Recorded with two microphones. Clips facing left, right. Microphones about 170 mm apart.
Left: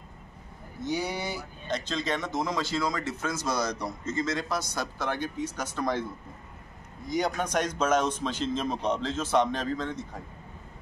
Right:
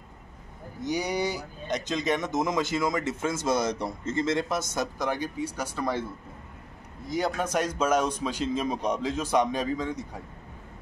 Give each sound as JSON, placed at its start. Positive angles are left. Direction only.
{"t": 0.8, "sound": "a man's voice", "side_deg": -15}
{"t": 7.1, "sound": "a man's voice", "side_deg": -5}